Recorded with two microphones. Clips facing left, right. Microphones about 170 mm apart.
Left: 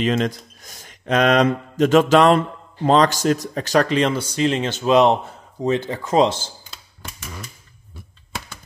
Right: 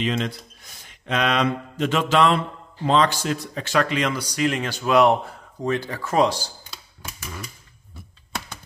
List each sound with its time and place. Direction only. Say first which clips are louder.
0.0 s speech: left 5 dB; 45° left (ahead or behind); by 6.5 s 20° left (ahead or behind)